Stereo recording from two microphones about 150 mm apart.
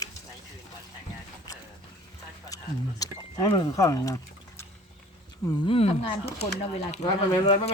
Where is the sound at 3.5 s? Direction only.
25° left (ahead or behind).